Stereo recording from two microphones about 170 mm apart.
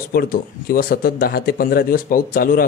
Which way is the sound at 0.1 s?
60° left (ahead or behind).